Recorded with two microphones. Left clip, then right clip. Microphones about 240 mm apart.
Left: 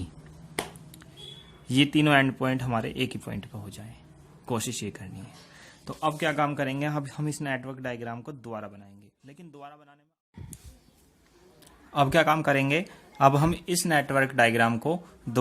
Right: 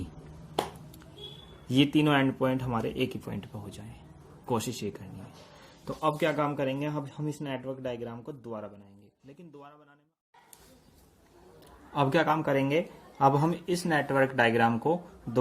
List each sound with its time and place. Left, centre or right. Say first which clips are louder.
1.6 s a man's voice: left 2 dB; left
11.9 s a man's voice: left 4 dB; left